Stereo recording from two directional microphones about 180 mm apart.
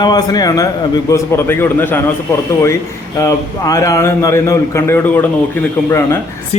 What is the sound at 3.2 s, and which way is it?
A man's voice, 20° left (ahead or behind).